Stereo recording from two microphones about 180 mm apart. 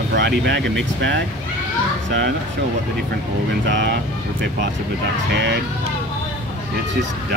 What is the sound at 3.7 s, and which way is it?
Speech, 80° right.